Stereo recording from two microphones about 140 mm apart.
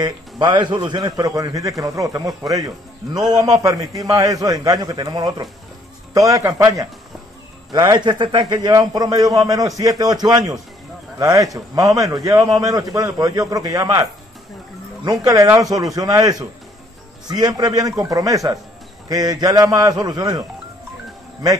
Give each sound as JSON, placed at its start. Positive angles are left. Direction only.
{"t": 0.0, "sound": "a man's voice", "side_deg": -30}
{"t": 15.0, "sound": "a man's voice", "side_deg": -25}